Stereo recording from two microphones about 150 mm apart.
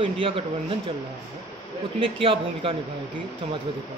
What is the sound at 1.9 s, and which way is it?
Speech, 40° right (ahead or behind).